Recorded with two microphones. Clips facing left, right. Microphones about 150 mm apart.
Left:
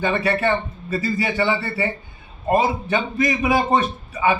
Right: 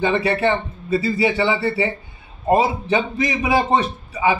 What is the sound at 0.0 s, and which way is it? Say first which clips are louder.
A man's voice: right 2 dB; 20° right (ahead or behind).